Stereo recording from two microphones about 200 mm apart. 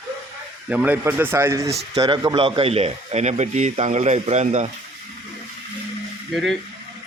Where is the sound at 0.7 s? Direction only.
5° right (ahead or behind); by 4.7 s 35° right (ahead or behind).